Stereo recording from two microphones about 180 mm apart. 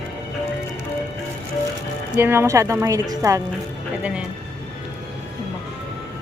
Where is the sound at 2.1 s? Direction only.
15° right (ahead or behind).